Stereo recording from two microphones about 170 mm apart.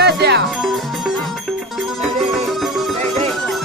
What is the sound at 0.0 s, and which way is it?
Music, 80° right.